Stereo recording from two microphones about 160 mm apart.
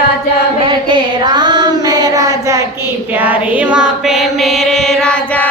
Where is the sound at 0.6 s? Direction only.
30° right (ahead or behind).